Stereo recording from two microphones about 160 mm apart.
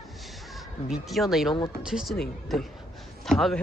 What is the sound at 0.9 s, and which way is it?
Speech, centre (ahead or behind).